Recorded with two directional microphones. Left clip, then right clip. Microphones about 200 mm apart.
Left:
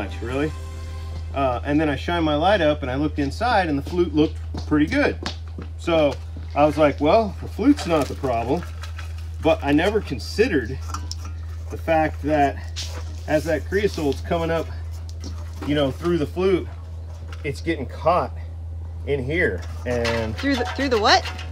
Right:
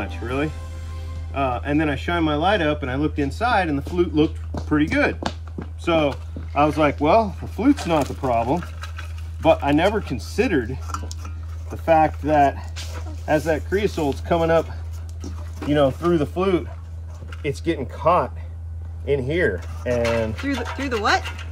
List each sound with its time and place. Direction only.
0.0 s speech: centre (ahead or behind)
11.8 s speech: 15° right (ahead or behind)
12.9 s speech: 5° right (ahead or behind)